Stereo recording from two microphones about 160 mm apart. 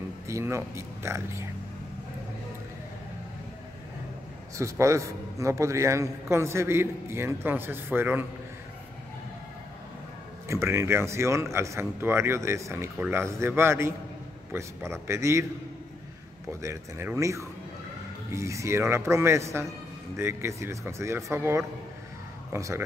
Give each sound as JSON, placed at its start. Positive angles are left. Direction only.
{"t": 0.3, "sound": "a man's voice", "side_deg": -15}
{"t": 4.6, "sound": "a man's voice", "side_deg": -20}
{"t": 10.5, "sound": "a man's voice", "side_deg": -15}
{"t": 16.6, "sound": "a man's voice", "side_deg": -15}